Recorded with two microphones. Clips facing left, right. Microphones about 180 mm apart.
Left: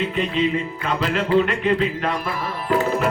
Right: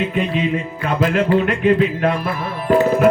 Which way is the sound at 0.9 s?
50° right (ahead or behind).